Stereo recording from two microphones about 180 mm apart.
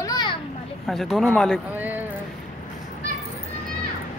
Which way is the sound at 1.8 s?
10° right (ahead or behind).